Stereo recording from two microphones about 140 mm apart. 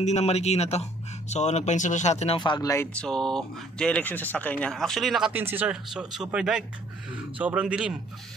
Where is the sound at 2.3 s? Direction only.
30° left (ahead or behind).